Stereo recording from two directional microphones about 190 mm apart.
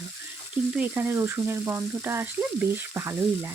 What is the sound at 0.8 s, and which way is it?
Frying, 10° right (ahead or behind).